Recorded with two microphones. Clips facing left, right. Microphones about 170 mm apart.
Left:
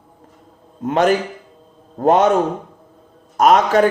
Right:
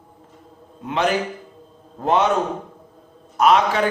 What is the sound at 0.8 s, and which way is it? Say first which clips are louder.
A man's voice: left 5 dB; 45° left (ahead or behind).